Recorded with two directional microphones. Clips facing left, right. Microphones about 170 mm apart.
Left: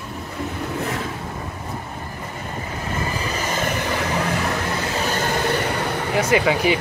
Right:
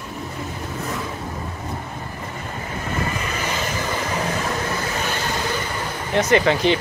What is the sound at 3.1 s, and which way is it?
Vehicle, 35° left (ahead or behind).